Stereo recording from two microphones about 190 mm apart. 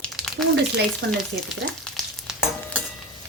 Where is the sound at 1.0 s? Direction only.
70° right (ahead or behind).